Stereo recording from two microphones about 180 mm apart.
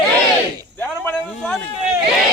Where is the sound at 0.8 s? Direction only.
10° left (ahead or behind).